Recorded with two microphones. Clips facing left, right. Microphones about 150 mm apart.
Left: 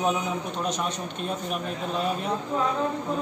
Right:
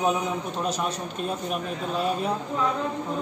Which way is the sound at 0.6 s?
5° right (ahead or behind).